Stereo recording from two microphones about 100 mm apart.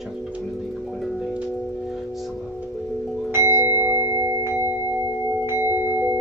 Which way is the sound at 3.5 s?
35° left (ahead or behind).